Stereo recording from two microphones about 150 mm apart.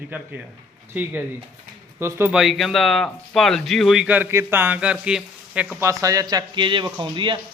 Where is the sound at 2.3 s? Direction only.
5° right (ahead or behind).